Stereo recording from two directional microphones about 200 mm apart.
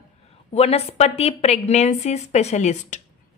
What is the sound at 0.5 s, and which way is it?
A woman's voice, 30° left (ahead or behind).